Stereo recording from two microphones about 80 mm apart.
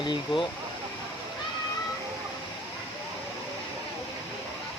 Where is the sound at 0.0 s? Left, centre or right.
Left.